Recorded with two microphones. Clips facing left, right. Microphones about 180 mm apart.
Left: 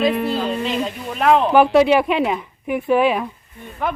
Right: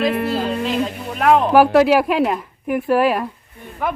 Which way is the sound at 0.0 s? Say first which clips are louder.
Even; centre (ahead or behind).